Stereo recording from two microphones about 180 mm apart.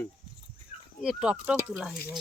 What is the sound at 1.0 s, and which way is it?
Speech, 5° right (ahead or behind).